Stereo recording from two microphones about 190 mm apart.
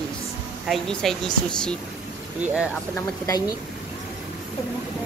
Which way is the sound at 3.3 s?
20° left (ahead or behind).